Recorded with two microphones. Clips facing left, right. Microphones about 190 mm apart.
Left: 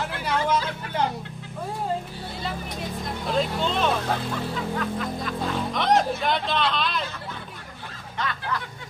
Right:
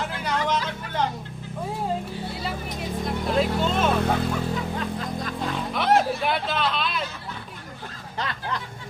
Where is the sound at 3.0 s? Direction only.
5° right (ahead or behind).